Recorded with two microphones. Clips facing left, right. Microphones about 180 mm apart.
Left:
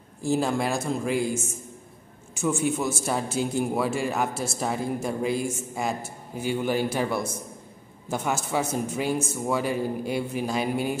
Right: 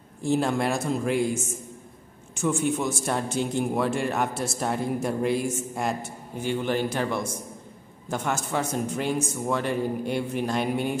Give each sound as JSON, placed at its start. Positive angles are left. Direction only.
{"t": 0.2, "sound": "a man's voice", "side_deg": 0}